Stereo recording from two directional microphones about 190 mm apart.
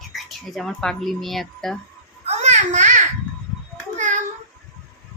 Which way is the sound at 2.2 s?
35° right (ahead or behind).